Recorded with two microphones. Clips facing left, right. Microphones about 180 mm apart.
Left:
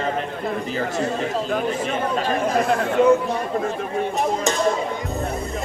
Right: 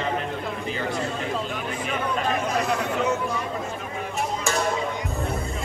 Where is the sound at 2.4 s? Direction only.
55° left (ahead or behind).